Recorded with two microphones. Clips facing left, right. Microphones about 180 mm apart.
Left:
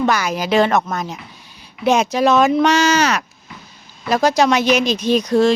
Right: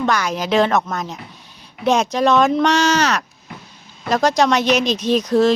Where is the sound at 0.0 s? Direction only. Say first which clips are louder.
Left 1 dB; 5° left (ahead or behind).